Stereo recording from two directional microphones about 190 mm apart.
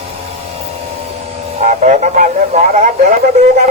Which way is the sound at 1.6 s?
40° right (ahead or behind).